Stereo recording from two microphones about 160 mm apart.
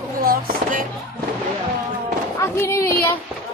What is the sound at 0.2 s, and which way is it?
Fireworks, 65° right (ahead or behind).